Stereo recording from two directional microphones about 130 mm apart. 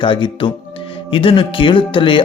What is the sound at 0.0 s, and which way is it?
Speech, 40° left (ahead or behind).